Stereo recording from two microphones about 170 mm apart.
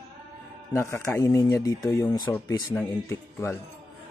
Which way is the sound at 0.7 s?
15° left (ahead or behind).